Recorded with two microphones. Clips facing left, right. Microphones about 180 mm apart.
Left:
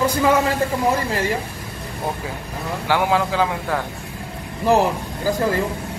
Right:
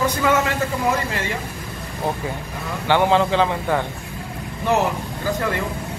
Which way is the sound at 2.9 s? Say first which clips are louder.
Right 3 dB; 5° left (ahead or behind).